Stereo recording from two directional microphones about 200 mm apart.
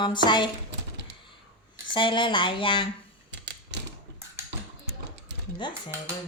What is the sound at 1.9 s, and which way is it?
Speech, 25° left (ahead or behind).